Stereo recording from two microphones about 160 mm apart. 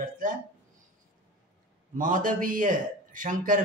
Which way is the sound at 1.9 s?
55° right (ahead or behind).